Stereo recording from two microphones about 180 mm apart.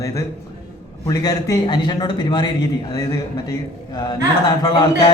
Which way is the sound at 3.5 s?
25° left (ahead or behind).